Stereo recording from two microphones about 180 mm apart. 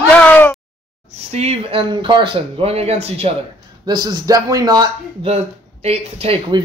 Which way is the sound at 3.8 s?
25° right (ahead or behind).